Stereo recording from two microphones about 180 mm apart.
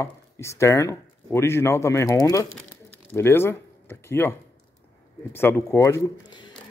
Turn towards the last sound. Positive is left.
turn(degrees=20)  # may be behind; listen again after turning